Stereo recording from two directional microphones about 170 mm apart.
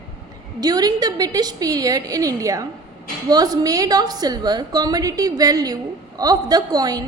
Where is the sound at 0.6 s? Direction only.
25° right (ahead or behind).